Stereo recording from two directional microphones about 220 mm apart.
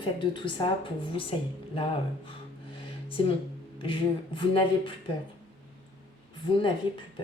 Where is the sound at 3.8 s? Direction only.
20° left (ahead or behind).